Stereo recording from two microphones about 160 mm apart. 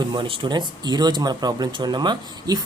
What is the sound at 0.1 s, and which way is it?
Speech, 30° right (ahead or behind).